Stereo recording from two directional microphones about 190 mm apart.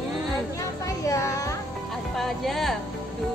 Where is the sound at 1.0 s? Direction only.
15° left (ahead or behind).